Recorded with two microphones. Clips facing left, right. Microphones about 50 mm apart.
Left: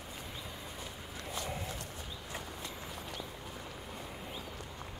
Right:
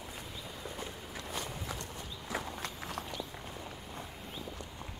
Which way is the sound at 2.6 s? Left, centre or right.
Right.